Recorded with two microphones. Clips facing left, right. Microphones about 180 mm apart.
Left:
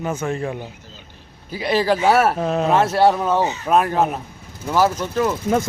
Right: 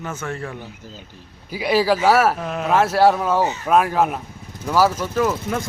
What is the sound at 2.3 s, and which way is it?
Speech, 30° left (ahead or behind).